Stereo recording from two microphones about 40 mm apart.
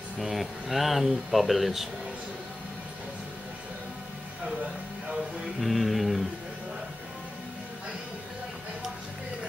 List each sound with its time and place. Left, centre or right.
0.2 s speech: centre
5.6 s speech: centre